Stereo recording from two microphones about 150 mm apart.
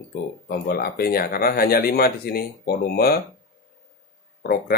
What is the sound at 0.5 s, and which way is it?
Speech, 90° left.